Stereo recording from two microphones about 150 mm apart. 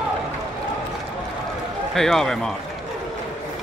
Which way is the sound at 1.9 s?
Centre (ahead or behind).